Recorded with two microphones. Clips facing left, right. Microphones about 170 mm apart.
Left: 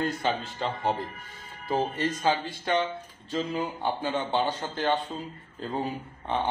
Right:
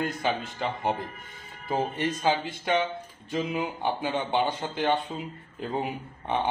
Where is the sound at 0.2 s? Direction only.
10° right (ahead or behind).